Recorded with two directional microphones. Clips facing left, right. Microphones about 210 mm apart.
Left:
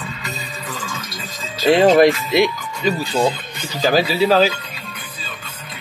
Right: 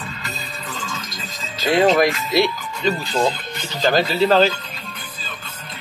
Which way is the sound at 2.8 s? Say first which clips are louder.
Left 2 dB; 10° left (ahead or behind).